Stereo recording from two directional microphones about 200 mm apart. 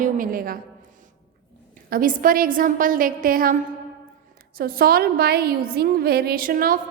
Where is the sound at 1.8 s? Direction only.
45° right (ahead or behind).